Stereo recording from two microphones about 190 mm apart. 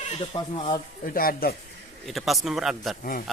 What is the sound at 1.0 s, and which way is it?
Speech, 50° left (ahead or behind).